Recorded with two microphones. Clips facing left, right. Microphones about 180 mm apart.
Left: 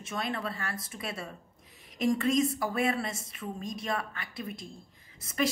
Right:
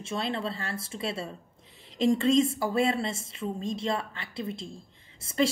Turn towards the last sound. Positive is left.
turn(degrees=-30)  # may be behind; listen again after turning